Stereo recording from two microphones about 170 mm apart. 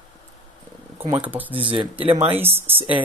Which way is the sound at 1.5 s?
30° right (ahead or behind).